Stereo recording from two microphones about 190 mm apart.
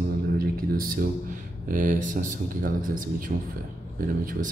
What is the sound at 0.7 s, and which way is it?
Speech, 45° right (ahead or behind).